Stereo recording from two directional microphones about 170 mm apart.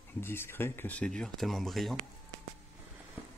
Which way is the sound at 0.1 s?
15° left (ahead or behind).